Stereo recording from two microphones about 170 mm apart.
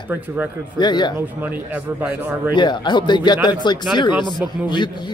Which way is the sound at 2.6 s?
25° left (ahead or behind).